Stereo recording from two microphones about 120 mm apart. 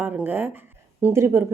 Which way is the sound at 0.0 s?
15° right (ahead or behind).